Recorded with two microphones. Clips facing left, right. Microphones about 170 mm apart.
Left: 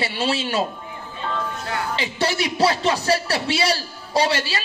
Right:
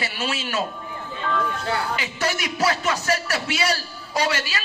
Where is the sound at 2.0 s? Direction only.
30° left (ahead or behind).